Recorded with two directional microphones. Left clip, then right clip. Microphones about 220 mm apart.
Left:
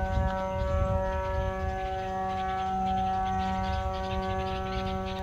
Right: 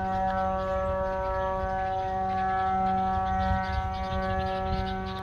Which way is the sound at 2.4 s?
5° right (ahead or behind).